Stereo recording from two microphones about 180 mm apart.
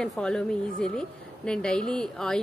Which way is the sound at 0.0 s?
5° left (ahead or behind).